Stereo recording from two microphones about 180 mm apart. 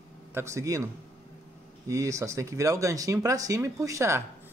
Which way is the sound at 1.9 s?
15° right (ahead or behind).